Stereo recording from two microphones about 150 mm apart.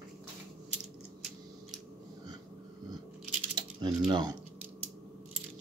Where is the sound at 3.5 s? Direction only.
30° right (ahead or behind).